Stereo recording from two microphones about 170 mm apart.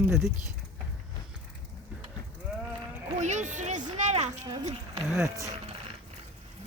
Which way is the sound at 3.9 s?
45° right (ahead or behind).